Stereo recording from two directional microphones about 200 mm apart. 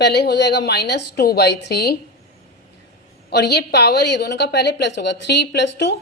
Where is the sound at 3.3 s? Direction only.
55° left (ahead or behind).